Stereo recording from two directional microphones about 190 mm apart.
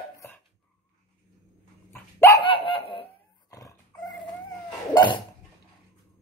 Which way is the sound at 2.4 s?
30° left (ahead or behind).